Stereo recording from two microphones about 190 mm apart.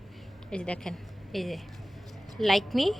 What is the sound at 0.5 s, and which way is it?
A woman's voice, 5° left (ahead or behind).